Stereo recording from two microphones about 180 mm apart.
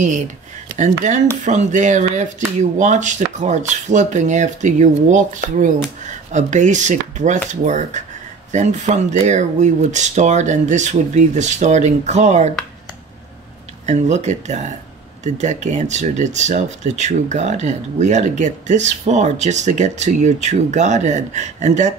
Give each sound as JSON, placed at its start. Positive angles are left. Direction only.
{"t": 0.7, "sound": "speech", "side_deg": -40}
{"t": 13.8, "sound": "speech", "side_deg": -40}